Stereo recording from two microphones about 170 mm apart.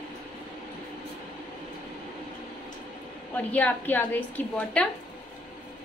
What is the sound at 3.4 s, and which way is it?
A woman's voice, 10° left (ahead or behind).